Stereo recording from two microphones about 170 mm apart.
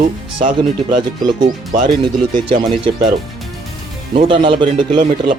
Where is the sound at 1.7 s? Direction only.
50° right (ahead or behind).